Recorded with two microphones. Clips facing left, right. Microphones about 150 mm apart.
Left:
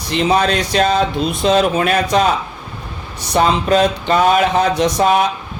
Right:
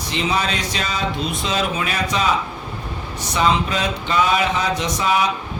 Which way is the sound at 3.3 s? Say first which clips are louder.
Left 6 dB; 50° left (ahead or behind).